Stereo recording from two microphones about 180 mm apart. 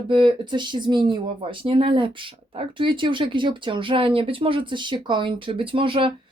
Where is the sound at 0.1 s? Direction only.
25° right (ahead or behind).